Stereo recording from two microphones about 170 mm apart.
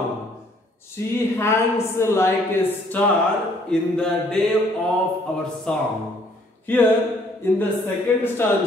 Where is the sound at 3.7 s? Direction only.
5° left (ahead or behind).